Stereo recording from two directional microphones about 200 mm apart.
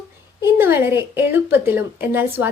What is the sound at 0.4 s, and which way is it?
A woman's voice, 10° right (ahead or behind).